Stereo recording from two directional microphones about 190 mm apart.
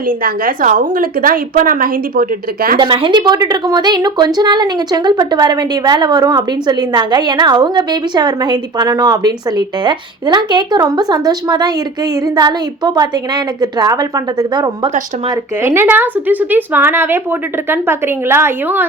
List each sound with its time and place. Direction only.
0.2 s a woman's voice: 50° right (ahead or behind)
2.7 s a woman's voice: 25° right (ahead or behind); by 18.9 s 10° right (ahead or behind)